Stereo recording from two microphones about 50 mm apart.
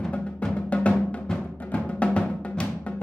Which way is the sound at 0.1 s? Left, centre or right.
Left.